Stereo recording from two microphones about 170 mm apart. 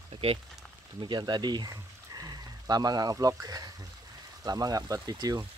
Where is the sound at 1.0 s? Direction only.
25° right (ahead or behind).